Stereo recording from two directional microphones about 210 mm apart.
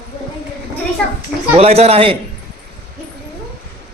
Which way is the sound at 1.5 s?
30° right (ahead or behind).